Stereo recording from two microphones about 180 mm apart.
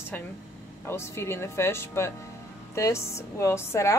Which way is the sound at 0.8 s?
15° left (ahead or behind).